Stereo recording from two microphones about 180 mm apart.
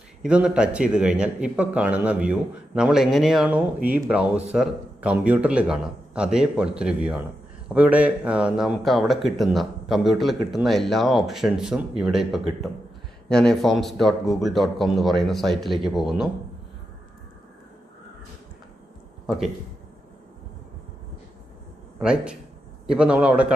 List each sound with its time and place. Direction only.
0.2 s speech: 5° right (ahead or behind)
19.2 s speech: centre (ahead or behind)
21.9 s a man's voice: 5° right (ahead or behind)